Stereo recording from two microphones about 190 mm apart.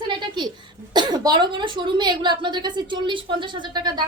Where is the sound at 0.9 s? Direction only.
20° right (ahead or behind).